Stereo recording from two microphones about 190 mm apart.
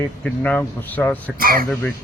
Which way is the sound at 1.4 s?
50° right (ahead or behind).